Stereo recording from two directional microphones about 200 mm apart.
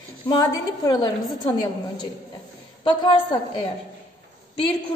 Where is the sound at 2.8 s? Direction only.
25° left (ahead or behind).